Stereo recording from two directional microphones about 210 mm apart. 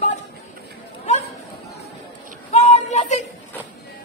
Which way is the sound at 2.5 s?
35° left (ahead or behind).